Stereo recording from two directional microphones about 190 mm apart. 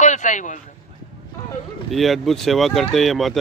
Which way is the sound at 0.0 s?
40° left (ahead or behind).